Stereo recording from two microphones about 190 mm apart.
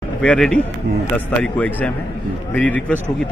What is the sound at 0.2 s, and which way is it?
Speech, 5° left (ahead or behind).